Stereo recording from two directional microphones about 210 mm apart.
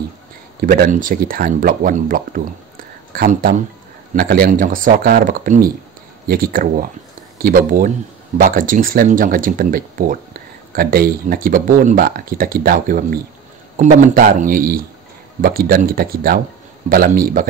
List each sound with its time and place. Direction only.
0.6 s speech: 40° right (ahead or behind)